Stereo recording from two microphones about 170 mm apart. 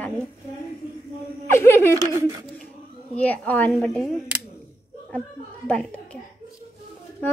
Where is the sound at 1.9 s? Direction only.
15° right (ahead or behind).